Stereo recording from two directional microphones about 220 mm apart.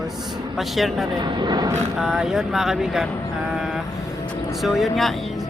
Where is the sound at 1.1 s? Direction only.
20° right (ahead or behind).